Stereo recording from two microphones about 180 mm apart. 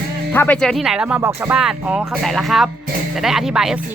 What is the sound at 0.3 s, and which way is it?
Speech, 10° left (ahead or behind).